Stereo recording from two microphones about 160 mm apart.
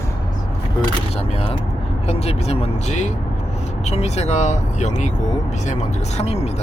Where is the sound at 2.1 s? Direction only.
40° left (ahead or behind).